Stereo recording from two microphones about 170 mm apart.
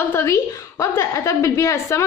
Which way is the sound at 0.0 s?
15° left (ahead or behind).